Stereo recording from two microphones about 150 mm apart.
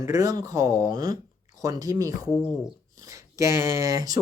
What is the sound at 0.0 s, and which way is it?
Speech, 20° right (ahead or behind).